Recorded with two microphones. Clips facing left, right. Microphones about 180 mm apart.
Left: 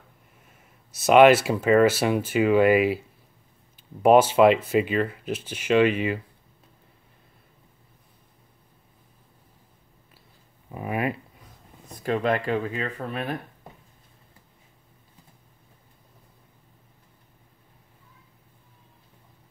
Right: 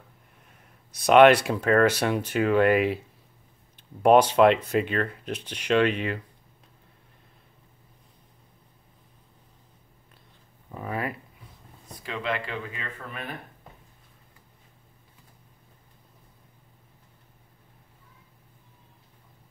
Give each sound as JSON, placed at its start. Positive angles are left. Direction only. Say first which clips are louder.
{"t": 0.5, "sound": "speech", "louder": "even", "side_deg": 5}
{"t": 10.7, "sound": "speech", "louder": "left 4 dB", "side_deg": 15}
{"t": 12.0, "sound": "speech", "louder": "left 7 dB", "side_deg": 45}